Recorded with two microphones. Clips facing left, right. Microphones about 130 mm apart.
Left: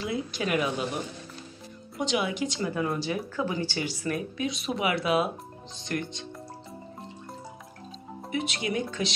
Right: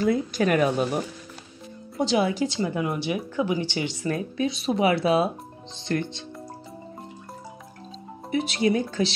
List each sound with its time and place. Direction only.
0.0 s speech: 45° right (ahead or behind)
2.0 s speech: 35° right (ahead or behind)
8.3 s speech: 35° right (ahead or behind)